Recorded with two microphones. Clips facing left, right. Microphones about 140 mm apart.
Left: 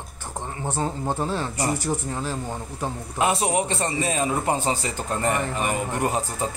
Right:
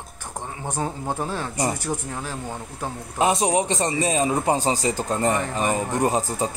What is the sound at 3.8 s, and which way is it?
Speech, 20° right (ahead or behind).